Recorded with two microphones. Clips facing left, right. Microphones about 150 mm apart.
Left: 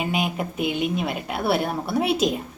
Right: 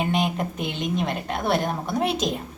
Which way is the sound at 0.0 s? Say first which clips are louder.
Right 1 dB; 5° left (ahead or behind).